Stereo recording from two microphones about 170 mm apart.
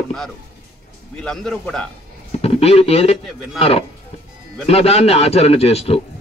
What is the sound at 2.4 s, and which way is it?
A man's voice, 35° left (ahead or behind).